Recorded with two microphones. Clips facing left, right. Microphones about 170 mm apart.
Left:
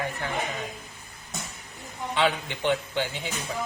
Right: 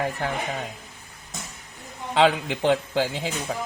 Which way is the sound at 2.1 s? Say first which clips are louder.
Right 6 dB; 90° right.